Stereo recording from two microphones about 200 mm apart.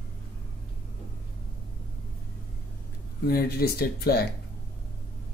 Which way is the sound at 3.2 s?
50° left (ahead or behind).